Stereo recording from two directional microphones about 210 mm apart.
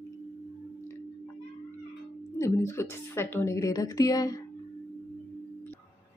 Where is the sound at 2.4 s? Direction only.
10° left (ahead or behind).